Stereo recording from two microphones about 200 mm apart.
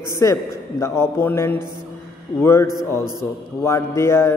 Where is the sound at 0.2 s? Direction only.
15° left (ahead or behind).